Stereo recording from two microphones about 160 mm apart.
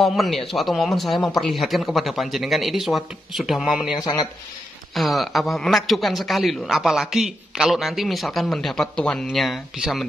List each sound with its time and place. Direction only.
0.0 s a man's voice: centre (ahead or behind)
4.0 s speech: 25° left (ahead or behind)
4.9 s a man's voice: centre (ahead or behind)